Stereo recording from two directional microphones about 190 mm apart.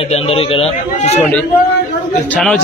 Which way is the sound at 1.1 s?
10° left (ahead or behind).